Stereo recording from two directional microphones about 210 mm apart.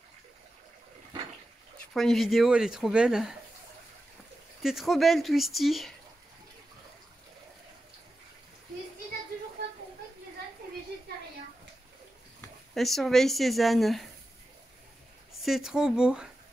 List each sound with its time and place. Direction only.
2.0 s speech: centre (ahead or behind)
4.6 s speech: centre (ahead or behind)
12.7 s speech: centre (ahead or behind)
15.4 s speech: centre (ahead or behind)